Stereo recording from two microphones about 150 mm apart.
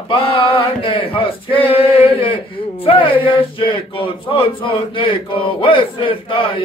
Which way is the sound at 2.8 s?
35° left (ahead or behind).